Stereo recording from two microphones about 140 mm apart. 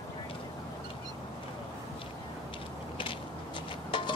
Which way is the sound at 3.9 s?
35° left (ahead or behind).